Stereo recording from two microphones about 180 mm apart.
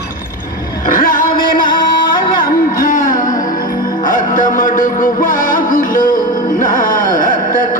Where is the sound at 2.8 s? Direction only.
45° left (ahead or behind).